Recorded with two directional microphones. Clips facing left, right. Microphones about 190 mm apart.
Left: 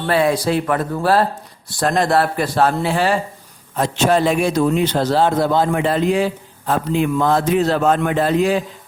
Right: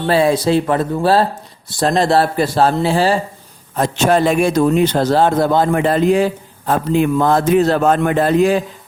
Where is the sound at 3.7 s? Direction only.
45° right (ahead or behind).